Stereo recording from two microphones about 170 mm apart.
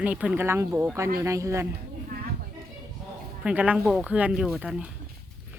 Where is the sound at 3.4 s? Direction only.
10° right (ahead or behind).